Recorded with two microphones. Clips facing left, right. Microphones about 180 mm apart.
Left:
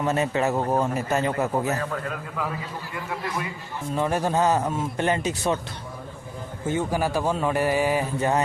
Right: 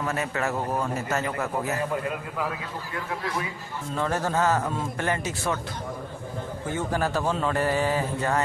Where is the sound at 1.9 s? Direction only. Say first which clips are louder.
Right 2 dB; 5° right (ahead or behind).